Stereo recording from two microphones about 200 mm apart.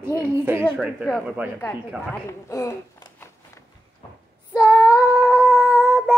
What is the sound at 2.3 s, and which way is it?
Speech, 15° left (ahead or behind).